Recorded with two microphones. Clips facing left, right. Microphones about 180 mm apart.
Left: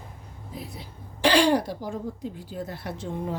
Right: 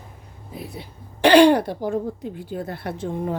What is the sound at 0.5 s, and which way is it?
Speech, 60° right (ahead or behind).